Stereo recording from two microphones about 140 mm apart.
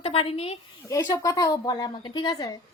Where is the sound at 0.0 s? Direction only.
45° left (ahead or behind).